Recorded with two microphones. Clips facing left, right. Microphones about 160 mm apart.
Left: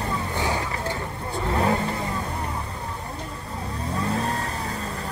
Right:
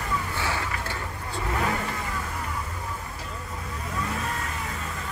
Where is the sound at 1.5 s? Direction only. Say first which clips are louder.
Left 5 dB; 30° left (ahead or behind).